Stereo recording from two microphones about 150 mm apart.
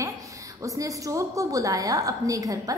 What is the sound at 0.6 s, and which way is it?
A woman's voice, 20° right (ahead or behind).